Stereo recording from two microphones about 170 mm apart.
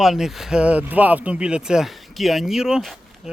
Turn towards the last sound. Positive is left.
turn(degrees=-5)  # may be behind; listen again after turning